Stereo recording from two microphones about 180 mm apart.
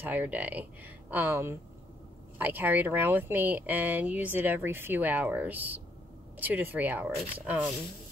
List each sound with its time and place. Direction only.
0.0 s speech: 10° right (ahead or behind)